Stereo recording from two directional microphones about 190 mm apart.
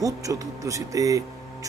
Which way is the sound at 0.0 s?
15° right (ahead or behind).